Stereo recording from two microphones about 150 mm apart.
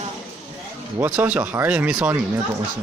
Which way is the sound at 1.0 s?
10° right (ahead or behind).